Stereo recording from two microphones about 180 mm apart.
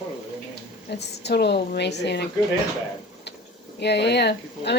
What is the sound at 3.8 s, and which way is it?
Speech, 70° left (ahead or behind).